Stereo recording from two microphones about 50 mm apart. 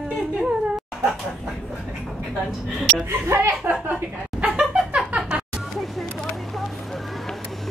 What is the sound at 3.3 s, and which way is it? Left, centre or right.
Speech, right.